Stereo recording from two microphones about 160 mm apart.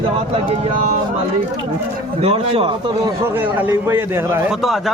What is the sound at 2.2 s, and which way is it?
Speech, 35° right (ahead or behind).